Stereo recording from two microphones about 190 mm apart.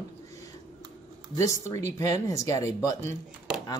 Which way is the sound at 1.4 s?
15° left (ahead or behind).